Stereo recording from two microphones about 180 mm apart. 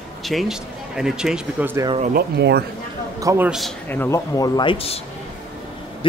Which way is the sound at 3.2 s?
15° right (ahead or behind).